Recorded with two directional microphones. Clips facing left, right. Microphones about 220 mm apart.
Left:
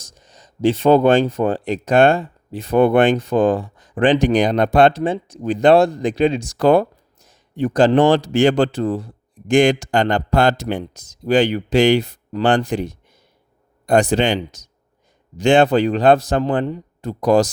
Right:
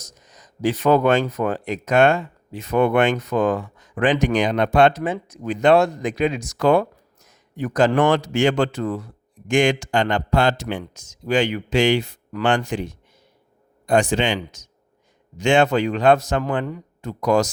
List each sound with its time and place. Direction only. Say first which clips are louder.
0.0 s speech: even; 30° left (ahead or behind)